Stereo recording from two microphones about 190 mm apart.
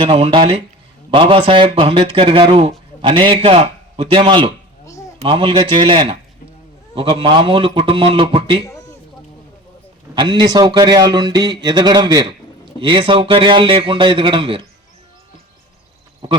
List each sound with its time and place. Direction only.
0.0 s a man's voice: 30° right (ahead or behind)
10.2 s a man's voice: 20° right (ahead or behind)
16.2 s speech: 25° right (ahead or behind)